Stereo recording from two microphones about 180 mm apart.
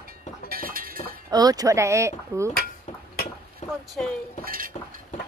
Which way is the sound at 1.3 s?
20° right (ahead or behind).